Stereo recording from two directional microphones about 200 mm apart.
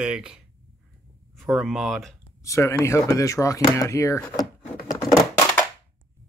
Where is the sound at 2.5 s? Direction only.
15° left (ahead or behind).